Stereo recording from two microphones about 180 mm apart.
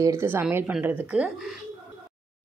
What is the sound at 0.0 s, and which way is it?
A woman's voice, 15° right (ahead or behind).